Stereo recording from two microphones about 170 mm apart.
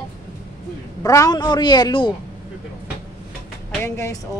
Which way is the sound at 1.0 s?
20° left (ahead or behind).